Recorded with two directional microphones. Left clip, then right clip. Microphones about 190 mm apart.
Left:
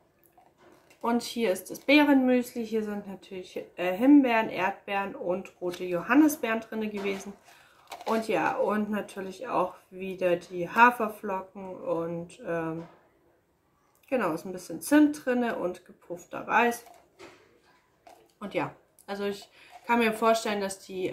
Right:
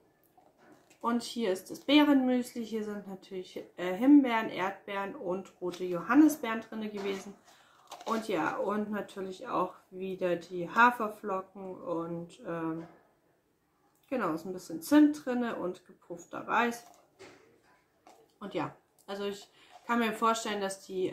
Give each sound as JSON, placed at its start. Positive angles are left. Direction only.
{"t": 1.0, "sound": "speech", "side_deg": 20}
{"t": 14.0, "sound": "speech", "side_deg": 20}
{"t": 18.4, "sound": "speech", "side_deg": 20}